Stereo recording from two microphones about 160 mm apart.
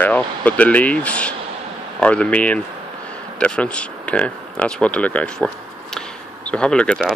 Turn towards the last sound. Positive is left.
turn(degrees=5)  # may be behind; listen again after turning